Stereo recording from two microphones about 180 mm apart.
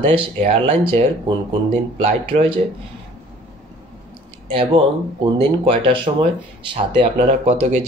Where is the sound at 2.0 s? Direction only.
35° right (ahead or behind).